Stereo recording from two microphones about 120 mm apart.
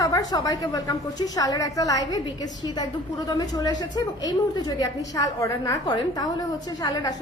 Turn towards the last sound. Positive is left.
turn(degrees=35)  # may be behind; listen again after turning